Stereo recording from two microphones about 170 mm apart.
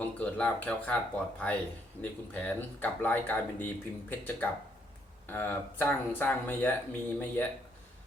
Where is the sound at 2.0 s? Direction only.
10° left (ahead or behind).